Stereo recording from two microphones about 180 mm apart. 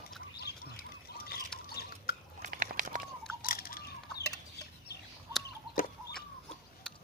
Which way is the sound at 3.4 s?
55° left (ahead or behind).